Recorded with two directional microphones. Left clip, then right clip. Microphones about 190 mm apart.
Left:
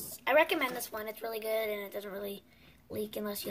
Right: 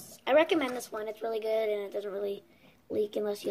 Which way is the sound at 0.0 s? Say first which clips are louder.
Right 2 dB; 20° left (ahead or behind).